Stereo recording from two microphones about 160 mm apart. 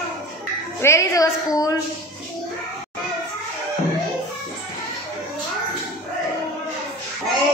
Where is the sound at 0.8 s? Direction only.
20° left (ahead or behind).